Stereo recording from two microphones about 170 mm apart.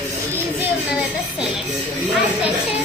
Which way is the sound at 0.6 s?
5° right (ahead or behind).